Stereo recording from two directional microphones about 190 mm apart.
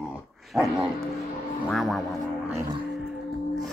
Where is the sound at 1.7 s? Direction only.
Centre (ahead or behind).